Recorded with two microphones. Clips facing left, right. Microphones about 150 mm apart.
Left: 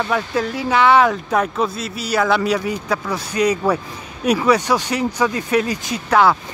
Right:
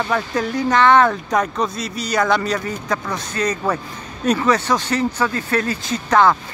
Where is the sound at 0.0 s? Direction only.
Centre (ahead or behind).